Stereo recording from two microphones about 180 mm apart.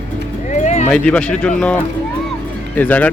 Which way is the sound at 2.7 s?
10° left (ahead or behind).